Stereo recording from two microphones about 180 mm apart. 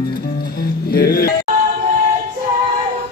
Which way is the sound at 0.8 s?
55° left (ahead or behind).